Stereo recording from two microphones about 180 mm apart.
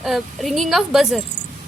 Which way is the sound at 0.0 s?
Centre (ahead or behind).